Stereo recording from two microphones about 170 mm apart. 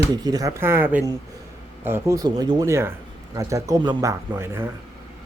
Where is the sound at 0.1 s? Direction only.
25° right (ahead or behind).